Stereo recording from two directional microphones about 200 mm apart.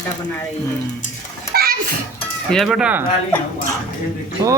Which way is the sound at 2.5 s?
Centre (ahead or behind).